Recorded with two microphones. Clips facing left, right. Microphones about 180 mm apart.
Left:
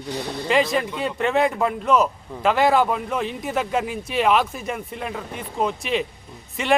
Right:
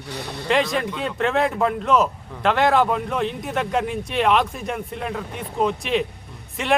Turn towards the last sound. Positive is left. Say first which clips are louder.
# left 1 dB
turn(degrees=0)  # may be behind; listen again after turning